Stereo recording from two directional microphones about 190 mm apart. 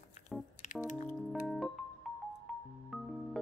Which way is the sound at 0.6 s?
40° left (ahead or behind).